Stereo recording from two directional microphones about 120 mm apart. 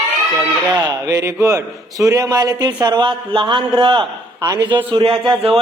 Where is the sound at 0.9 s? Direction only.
30° right (ahead or behind).